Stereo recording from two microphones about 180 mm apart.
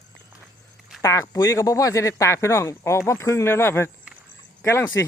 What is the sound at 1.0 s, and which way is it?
Speech, 15° left (ahead or behind).